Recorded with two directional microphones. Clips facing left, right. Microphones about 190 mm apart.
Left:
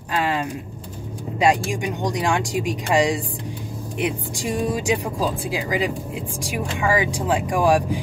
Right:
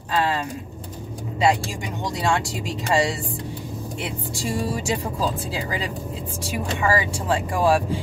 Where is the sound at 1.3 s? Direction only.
15° left (ahead or behind).